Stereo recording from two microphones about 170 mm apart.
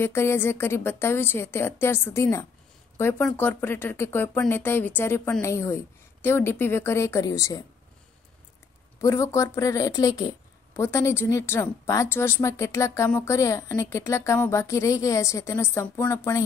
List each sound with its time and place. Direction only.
0.0 s speech: 15° left (ahead or behind)
9.0 s speech: 15° left (ahead or behind)